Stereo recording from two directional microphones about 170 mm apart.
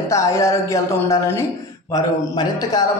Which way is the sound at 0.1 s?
20° left (ahead or behind).